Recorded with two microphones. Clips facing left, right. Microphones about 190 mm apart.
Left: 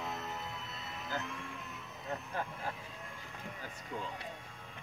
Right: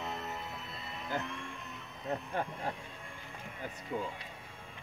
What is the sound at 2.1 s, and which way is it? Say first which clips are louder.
Vehicle: right 4 dB; 30° right (ahead or behind).